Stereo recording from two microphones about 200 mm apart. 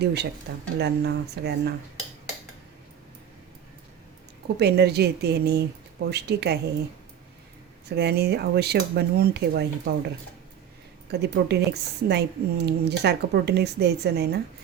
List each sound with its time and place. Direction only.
0.0 s speech: 55° right (ahead or behind)
4.5 s a woman's voice: 55° right (ahead or behind)
7.9 s speech: 55° right (ahead or behind)
11.1 s speech: 55° right (ahead or behind)